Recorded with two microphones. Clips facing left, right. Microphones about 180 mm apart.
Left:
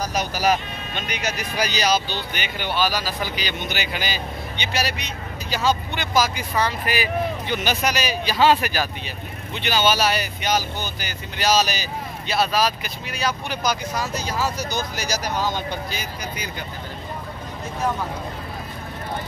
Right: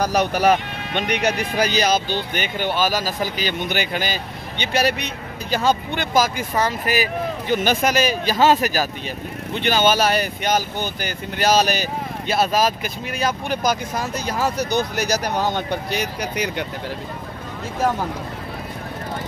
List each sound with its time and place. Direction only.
0.0 s speech: 60° right (ahead or behind); by 8.8 s 40° right (ahead or behind)
9.5 s speech: 50° right (ahead or behind); by 16.6 s 75° right (ahead or behind)